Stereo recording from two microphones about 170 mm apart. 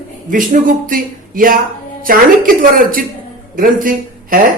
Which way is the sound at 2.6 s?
55° right (ahead or behind).